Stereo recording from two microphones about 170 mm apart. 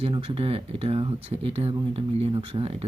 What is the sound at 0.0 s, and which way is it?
Speech, 35° right (ahead or behind).